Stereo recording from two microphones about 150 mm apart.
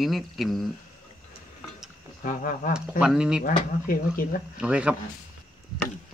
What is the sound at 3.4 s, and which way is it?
Speech, 70° left (ahead or behind).